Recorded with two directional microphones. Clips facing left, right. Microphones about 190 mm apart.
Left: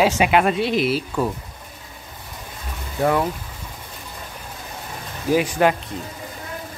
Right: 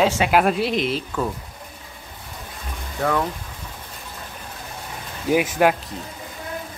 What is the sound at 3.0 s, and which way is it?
Speech, 20° left (ahead or behind).